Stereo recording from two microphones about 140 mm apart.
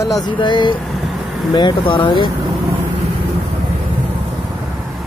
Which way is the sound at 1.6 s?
35° left (ahead or behind).